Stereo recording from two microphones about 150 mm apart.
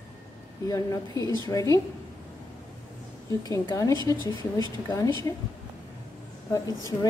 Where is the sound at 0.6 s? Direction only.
20° left (ahead or behind).